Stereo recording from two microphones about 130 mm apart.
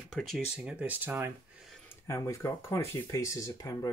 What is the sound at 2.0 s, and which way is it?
Speech, 20° left (ahead or behind).